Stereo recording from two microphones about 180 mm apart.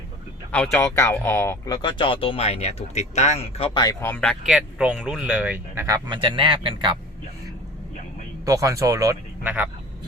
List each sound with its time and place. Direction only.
0.5 s speech: 10° left (ahead or behind); by 3.8 s 35° left (ahead or behind)
3.8 s speech: 10° left (ahead or behind); by 6.9 s 30° right (ahead or behind)
8.4 s speech: 20° right (ahead or behind)